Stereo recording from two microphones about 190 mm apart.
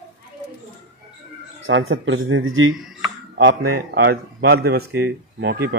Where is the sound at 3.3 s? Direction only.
60° right (ahead or behind); by 4.6 s 75° right (ahead or behind).